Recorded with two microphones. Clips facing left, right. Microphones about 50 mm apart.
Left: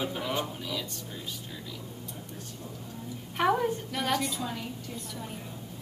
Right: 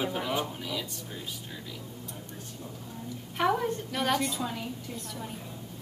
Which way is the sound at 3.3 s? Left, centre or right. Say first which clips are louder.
Left 1 dB; centre.